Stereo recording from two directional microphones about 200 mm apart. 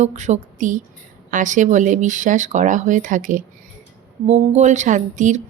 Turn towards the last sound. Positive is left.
turn(degrees=-35)  # may be behind; listen again after turning